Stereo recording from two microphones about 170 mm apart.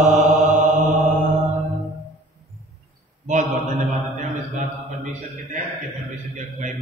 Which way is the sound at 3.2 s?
45° right (ahead or behind).